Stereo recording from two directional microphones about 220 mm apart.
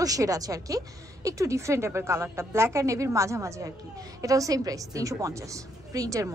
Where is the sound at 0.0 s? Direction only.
15° right (ahead or behind).